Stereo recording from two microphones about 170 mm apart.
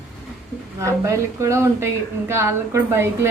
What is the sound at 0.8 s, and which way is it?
A woman's voice, 15° right (ahead or behind).